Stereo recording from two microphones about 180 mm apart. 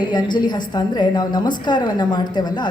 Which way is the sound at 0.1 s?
25° left (ahead or behind).